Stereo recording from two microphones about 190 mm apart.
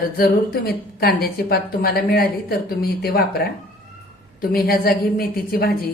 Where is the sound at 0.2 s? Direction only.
55° left (ahead or behind).